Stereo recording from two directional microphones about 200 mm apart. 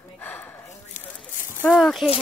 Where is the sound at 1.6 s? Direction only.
5° left (ahead or behind).